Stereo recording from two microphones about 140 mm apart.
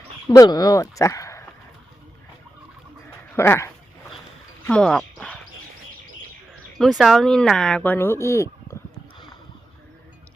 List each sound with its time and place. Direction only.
0.3 s speech: 30° left (ahead or behind)
3.3 s speech: 15° left (ahead or behind)
4.6 s dog: 5° left (ahead or behind)
6.7 s speech: centre (ahead or behind); by 8.7 s 20° left (ahead or behind)